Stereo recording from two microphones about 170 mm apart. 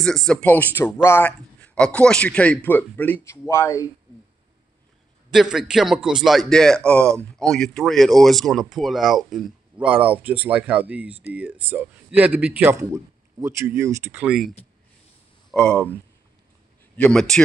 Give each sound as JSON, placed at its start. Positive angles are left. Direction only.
{"t": 0.0, "sound": "a man's voice", "side_deg": 0}
{"t": 5.3, "sound": "a man's voice", "side_deg": -5}
{"t": 14.2, "sound": "a man's voice", "side_deg": -5}
{"t": 15.5, "sound": "a man's voice", "side_deg": 5}